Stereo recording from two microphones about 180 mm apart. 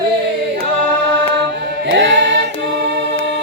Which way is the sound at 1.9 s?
90° right.